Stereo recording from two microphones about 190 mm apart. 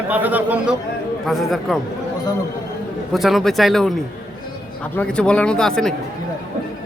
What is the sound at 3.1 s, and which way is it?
Speech, centre (ahead or behind).